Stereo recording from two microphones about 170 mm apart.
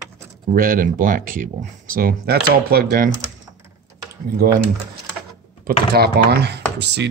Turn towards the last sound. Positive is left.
turn(degrees=-80)